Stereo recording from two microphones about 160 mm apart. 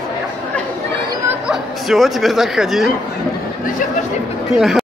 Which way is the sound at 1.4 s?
Centre (ahead or behind).